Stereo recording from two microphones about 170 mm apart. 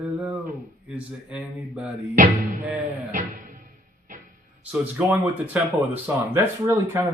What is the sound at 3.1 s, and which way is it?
Music, 50° right (ahead or behind).